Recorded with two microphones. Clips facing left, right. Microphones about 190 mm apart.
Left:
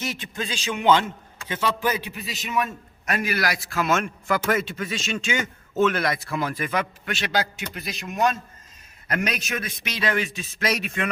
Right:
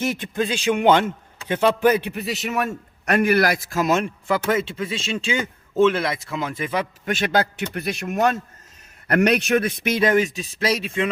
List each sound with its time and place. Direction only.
0.0 s a man's voice: 55° right (ahead or behind); by 6.8 s 25° right (ahead or behind)
7.0 s a man's voice: 45° right (ahead or behind)
10.5 s speech: 30° right (ahead or behind)